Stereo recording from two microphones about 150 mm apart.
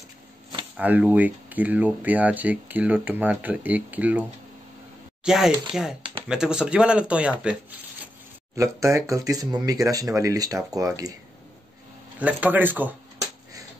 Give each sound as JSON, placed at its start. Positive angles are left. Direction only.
{"t": 0.7, "sound": "speech", "side_deg": -10}
{"t": 8.5, "sound": "speech", "side_deg": -20}
{"t": 12.2, "sound": "speech", "side_deg": -10}